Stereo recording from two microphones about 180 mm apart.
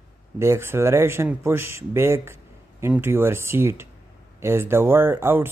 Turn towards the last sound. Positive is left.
turn(degrees=-10)  # may be behind; listen again after turning